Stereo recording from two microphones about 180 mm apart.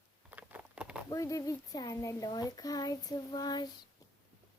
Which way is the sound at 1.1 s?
20° left (ahead or behind).